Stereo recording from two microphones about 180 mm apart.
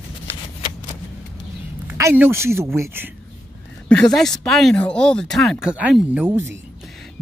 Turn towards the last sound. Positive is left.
turn(degrees=-15)  # may be behind; listen again after turning